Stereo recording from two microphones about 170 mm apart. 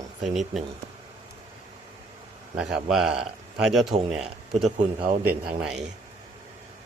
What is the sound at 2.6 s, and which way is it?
Speech, 5° right (ahead or behind).